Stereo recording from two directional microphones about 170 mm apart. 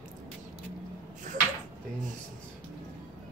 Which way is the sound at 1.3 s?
50° right (ahead or behind).